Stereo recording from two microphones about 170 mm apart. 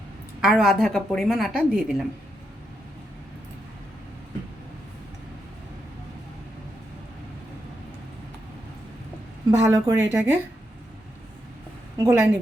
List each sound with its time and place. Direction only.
0.4 s a woman's voice: centre (ahead or behind)
9.5 s speech: 20° right (ahead or behind)
11.9 s a woman's voice: 20° right (ahead or behind)